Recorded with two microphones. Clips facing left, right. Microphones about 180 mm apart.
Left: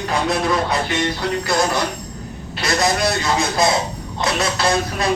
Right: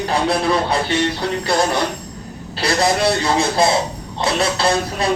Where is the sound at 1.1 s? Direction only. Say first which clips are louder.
Right 1 dB; 30° right (ahead or behind).